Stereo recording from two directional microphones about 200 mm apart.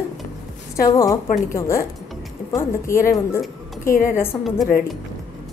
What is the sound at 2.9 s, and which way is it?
A woman's voice, 15° left (ahead or behind).